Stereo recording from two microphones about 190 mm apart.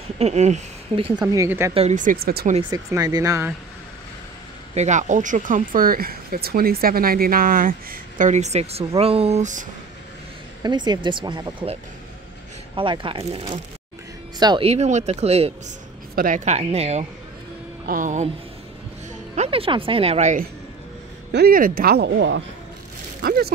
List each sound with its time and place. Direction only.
0.2 s speech: 35° right (ahead or behind)
1.3 s speech: 15° right (ahead or behind)
1.7 s speech: 35° right (ahead or behind); by 2.5 s 55° right (ahead or behind)
2.7 s speech: 20° right (ahead or behind)
4.7 s speech: 40° right (ahead or behind)
10.6 s speech: 25° right (ahead or behind)
12.7 s speech: 25° right (ahead or behind)
16.2 s speech: 45° right (ahead or behind)
19.3 s speech: 30° right (ahead or behind)
21.3 s speech: 55° right (ahead or behind); by 22.4 s 75° right (ahead or behind)
23.2 s speech: 50° right (ahead or behind)